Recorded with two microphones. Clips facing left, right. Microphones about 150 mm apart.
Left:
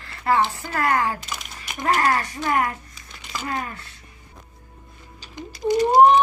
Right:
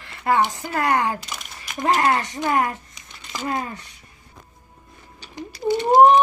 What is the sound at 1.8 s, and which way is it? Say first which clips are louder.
Speech: right 2 dB; 20° right (ahead or behind).